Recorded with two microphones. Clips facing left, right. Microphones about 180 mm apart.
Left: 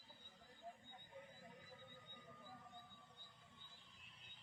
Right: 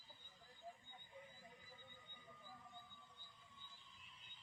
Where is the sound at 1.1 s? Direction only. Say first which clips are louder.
Left 2 dB; 55° left (ahead or behind).